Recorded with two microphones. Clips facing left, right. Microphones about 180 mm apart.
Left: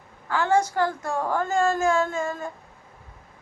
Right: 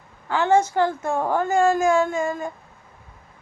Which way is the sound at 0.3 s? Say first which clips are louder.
Right 3 dB; 20° right (ahead or behind).